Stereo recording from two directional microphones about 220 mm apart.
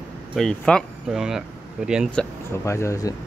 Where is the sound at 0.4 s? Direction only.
5° left (ahead or behind).